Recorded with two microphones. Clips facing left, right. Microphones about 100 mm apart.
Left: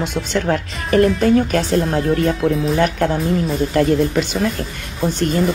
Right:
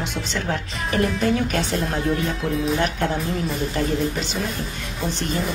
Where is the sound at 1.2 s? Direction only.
45° left (ahead or behind).